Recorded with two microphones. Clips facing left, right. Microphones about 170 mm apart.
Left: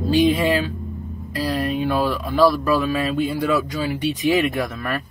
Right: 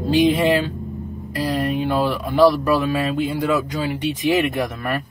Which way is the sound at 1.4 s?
20° right (ahead or behind).